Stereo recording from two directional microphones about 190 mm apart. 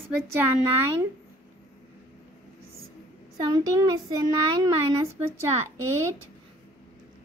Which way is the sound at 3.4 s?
20° right (ahead or behind).